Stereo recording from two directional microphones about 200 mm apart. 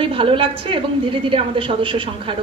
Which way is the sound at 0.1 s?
25° right (ahead or behind).